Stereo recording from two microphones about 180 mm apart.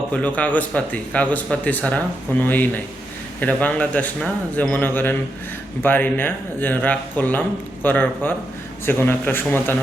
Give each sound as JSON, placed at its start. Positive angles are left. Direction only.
{"t": 0.1, "sound": "speech", "side_deg": 10}